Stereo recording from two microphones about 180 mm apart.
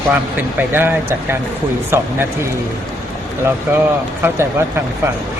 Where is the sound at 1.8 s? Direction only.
15° right (ahead or behind).